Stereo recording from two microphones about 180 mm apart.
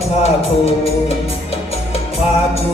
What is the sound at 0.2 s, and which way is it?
Music, 35° left (ahead or behind).